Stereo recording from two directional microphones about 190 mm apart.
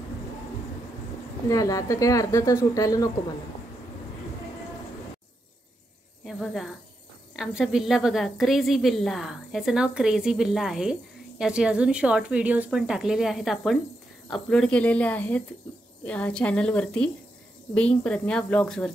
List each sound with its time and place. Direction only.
1.5 s a woman's voice: 20° left (ahead or behind)
6.2 s a sound: centre (ahead or behind)
7.3 s a woman's voice: 5° right (ahead or behind)